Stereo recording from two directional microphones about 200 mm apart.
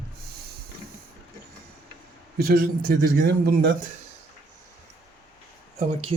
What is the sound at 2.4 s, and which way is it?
A man's voice, 50° right (ahead or behind).